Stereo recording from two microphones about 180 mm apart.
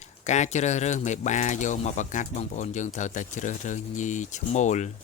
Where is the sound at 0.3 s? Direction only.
40° left (ahead or behind).